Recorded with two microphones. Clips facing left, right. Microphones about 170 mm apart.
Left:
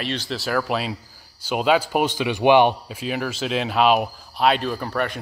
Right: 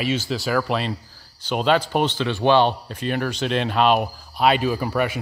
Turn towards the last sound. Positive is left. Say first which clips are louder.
# right 3 dB
turn(degrees=-5)  # may be behind; listen again after turning